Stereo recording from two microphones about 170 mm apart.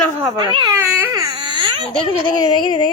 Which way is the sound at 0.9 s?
15° right (ahead or behind).